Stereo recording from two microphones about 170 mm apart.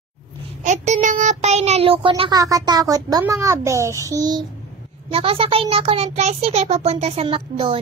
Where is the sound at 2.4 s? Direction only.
20° right (ahead or behind).